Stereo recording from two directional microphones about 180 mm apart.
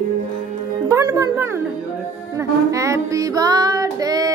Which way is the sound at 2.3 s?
15° right (ahead or behind).